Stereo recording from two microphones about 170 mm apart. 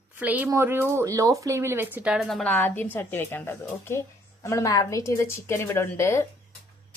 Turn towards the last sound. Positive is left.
turn(degrees=15)  # may be behind; listen again after turning